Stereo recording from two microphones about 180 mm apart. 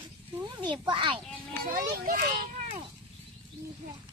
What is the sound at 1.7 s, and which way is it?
Speech, 55° right (ahead or behind).